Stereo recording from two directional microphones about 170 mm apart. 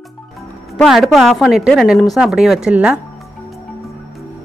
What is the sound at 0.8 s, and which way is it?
A woman's voice, centre (ahead or behind).